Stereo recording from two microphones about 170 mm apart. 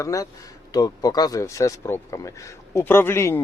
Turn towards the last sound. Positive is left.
turn(degrees=15)  # may be behind; listen again after turning